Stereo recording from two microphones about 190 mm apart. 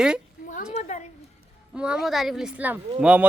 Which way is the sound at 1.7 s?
5° right (ahead or behind).